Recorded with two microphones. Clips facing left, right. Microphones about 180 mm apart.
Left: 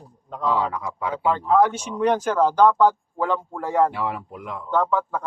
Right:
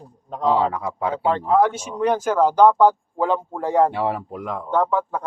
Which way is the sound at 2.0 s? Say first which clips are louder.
Right 1 dB; 10° right (ahead or behind).